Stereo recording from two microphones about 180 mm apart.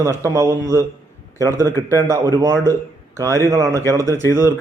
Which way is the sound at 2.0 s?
20° right (ahead or behind).